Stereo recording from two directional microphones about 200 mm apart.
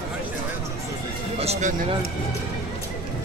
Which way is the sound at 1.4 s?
35° right (ahead or behind).